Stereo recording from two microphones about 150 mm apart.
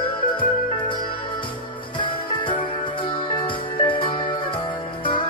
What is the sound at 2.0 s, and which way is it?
Music, 35° left (ahead or behind).